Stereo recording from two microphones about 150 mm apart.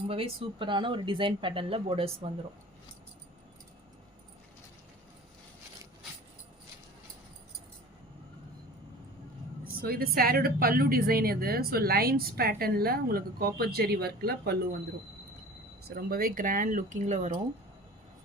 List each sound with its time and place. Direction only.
0.1 s speech: 40° right (ahead or behind)
9.8 s a woman's voice: 90° right
16.0 s speech: 75° right (ahead or behind); by 17.3 s 50° right (ahead or behind)